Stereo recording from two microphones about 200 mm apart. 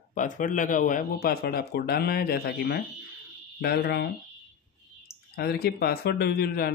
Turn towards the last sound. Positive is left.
turn(degrees=50)  # may be behind; listen again after turning